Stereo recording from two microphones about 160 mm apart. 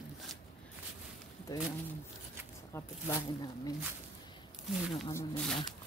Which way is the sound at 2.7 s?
20° left (ahead or behind).